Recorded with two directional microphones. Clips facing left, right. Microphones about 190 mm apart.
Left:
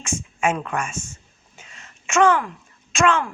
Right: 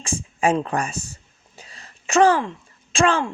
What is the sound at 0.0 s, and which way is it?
A man's voice, 35° right (ahead or behind).